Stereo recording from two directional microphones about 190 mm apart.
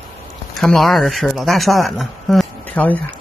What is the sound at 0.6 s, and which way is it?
Speech, centre (ahead or behind).